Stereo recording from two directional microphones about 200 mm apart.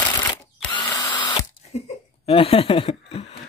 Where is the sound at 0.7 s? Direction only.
25° left (ahead or behind).